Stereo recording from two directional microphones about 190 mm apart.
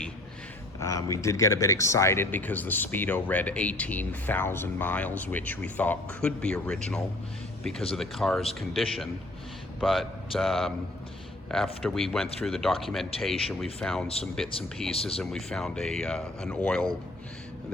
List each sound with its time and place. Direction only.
0.8 s speech: 15° left (ahead or behind)